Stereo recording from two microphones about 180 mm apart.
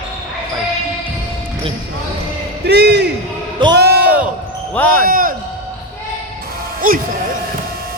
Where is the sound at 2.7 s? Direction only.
65° right (ahead or behind).